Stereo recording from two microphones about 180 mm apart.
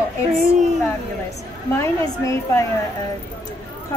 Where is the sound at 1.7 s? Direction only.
15° left (ahead or behind).